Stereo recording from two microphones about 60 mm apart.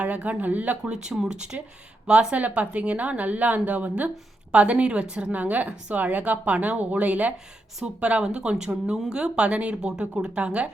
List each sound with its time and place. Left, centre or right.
0.0 s a woman's voice: right